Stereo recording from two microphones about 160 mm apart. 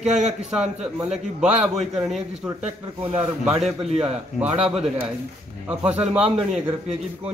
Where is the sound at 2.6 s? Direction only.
40° right (ahead or behind).